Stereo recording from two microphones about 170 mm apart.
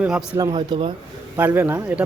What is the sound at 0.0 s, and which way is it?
Speech, 5° right (ahead or behind).